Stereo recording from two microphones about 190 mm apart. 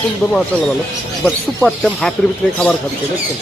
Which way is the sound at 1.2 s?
5° left (ahead or behind).